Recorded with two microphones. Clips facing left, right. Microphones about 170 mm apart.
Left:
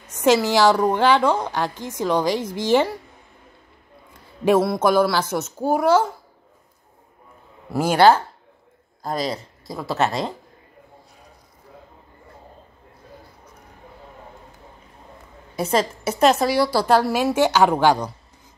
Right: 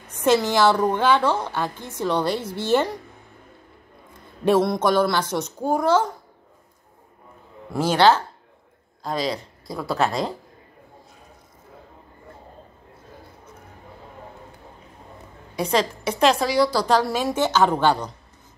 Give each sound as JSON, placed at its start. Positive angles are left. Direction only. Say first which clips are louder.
{"t": 0.2, "sound": "a child's voice", "louder": "left 2 dB", "side_deg": 10}
{"t": 4.5, "sound": "a child's voice", "louder": "left 1 dB", "side_deg": 5}
{"t": 7.7, "sound": "a child's voice", "louder": "left 2 dB", "side_deg": 10}
{"t": 9.2, "sound": "speech", "louder": "even", "side_deg": 0}
{"t": 16.2, "sound": "a woman's voice", "louder": "left 2 dB", "side_deg": 45}
{"t": 16.5, "sound": "a child's voice", "louder": "left 1 dB", "side_deg": 5}